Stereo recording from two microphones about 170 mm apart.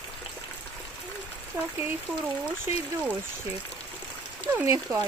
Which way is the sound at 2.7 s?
10° right (ahead or behind).